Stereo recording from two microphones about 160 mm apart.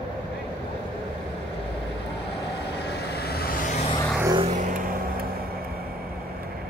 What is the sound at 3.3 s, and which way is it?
Vehicle, 65° left (ahead or behind).